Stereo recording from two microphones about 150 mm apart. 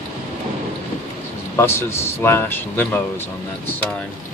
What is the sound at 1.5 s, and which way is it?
Speech, 15° left (ahead or behind).